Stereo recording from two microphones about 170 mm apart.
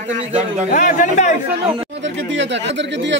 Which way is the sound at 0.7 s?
50° left (ahead or behind).